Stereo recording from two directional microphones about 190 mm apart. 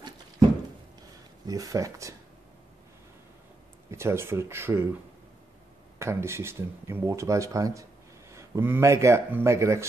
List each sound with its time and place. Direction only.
1.4 s speech: 20° right (ahead or behind)
3.9 s speech: 15° right (ahead or behind)
5.9 s speech: 15° right (ahead or behind)